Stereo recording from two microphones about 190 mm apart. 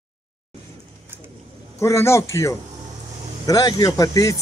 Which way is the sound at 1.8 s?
15° left (ahead or behind).